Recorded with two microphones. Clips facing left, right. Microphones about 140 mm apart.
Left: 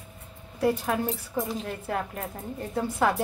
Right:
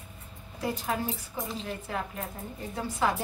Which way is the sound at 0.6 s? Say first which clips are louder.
Left 6 dB; 60° left (ahead or behind).